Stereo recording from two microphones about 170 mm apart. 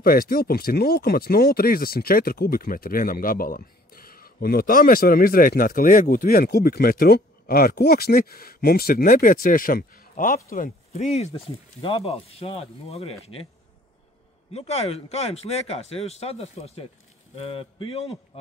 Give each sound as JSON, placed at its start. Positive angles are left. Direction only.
{"t": 0.0, "sound": "speech", "side_deg": 60}
{"t": 10.9, "sound": "speech", "side_deg": 40}
{"t": 14.5, "sound": "speech", "side_deg": 40}